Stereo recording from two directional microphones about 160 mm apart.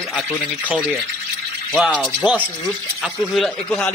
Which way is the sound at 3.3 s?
5° left (ahead or behind).